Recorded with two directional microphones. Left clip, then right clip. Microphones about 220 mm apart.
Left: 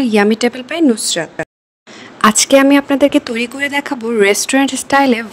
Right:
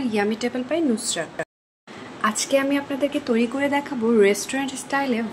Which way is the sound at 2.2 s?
55° left (ahead or behind).